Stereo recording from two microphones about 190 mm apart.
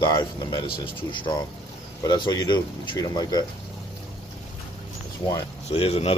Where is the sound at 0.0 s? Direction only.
20° left (ahead or behind).